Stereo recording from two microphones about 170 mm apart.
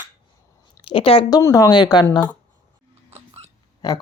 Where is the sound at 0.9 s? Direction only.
30° left (ahead or behind).